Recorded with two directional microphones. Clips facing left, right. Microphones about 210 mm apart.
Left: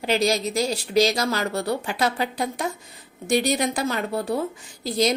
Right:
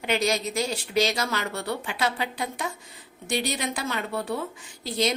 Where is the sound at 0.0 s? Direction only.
35° left (ahead or behind).